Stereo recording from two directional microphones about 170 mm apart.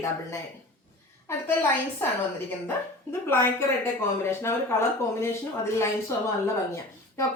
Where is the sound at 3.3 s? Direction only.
15° left (ahead or behind).